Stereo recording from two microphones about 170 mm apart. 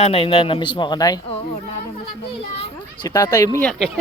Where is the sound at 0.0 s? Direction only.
35° left (ahead or behind).